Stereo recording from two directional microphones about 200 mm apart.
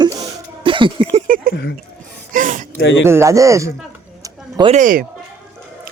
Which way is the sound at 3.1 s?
15° right (ahead or behind).